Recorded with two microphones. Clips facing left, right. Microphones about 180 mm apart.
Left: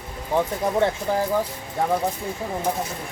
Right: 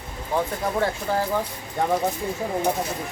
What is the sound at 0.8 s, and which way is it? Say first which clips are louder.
Speech: left 4 dB; 25° left (ahead or behind).